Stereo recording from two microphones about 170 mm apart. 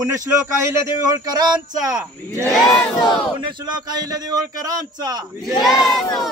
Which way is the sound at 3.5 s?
25° right (ahead or behind).